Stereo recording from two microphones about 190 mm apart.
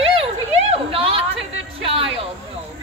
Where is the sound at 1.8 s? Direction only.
30° right (ahead or behind).